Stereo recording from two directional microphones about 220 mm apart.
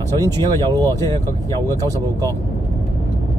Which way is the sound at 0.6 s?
20° right (ahead or behind).